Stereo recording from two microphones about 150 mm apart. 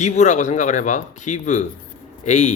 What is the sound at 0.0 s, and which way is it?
A man's voice, 50° left (ahead or behind).